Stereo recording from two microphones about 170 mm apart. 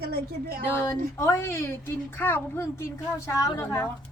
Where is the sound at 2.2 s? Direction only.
10° left (ahead or behind).